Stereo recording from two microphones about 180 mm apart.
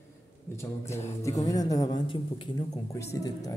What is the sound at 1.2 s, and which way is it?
A woman's voice, 20° left (ahead or behind).